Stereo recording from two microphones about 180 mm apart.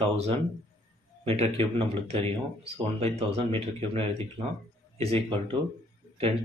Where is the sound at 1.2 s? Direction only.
35° right (ahead or behind).